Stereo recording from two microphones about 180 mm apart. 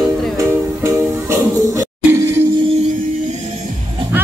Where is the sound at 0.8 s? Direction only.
15° right (ahead or behind).